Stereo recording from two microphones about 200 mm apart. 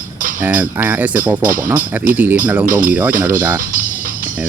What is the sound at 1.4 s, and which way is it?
Speech, 45° right (ahead or behind).